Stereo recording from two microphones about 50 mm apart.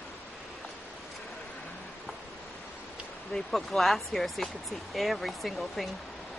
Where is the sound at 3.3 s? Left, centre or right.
Centre.